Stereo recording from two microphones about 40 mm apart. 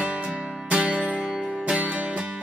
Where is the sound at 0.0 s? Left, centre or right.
Right.